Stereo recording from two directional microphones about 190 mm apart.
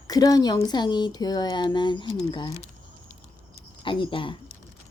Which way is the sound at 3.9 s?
25° left (ahead or behind).